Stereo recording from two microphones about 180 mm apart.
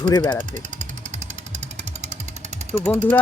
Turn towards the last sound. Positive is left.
turn(degrees=10)  # may be behind; listen again after turning